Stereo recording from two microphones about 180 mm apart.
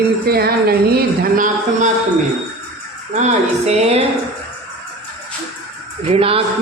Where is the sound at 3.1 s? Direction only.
40° right (ahead or behind).